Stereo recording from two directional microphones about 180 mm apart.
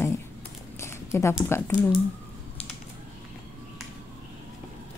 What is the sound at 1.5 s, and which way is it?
Speech, 15° left (ahead or behind).